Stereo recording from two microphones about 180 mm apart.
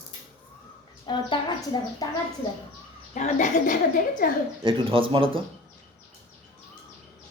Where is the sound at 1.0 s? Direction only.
25° left (ahead or behind).